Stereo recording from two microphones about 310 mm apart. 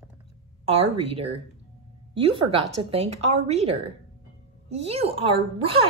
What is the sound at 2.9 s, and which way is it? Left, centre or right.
A woman's voice, centre.